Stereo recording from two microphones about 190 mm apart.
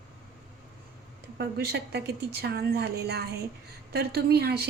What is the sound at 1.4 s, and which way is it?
A woman's voice, 55° right (ahead or behind).